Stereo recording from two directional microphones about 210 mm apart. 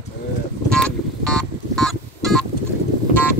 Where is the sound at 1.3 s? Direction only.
Centre (ahead or behind).